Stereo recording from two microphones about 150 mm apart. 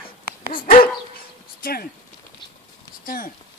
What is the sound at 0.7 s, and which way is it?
Dog, 75° left (ahead or behind).